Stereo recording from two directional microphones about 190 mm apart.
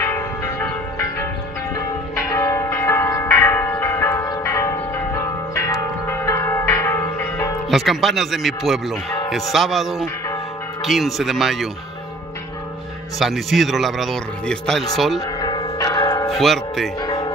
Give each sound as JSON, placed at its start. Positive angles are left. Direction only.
{"t": 0.0, "sound": "church bell", "side_deg": 10}
{"t": 2.3, "sound": "church bell", "side_deg": 15}
{"t": 6.2, "sound": "change ringing", "side_deg": 15}
{"t": 7.7, "sound": "speech", "side_deg": 0}
{"t": 13.2, "sound": "speech", "side_deg": 0}
{"t": 15.1, "sound": "church bell", "side_deg": 20}
{"t": 16.3, "sound": "speech", "side_deg": 0}
{"t": 17.0, "sound": "music", "side_deg": 20}